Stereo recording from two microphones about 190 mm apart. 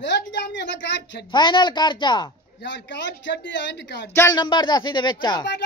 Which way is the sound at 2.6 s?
70° left (ahead or behind).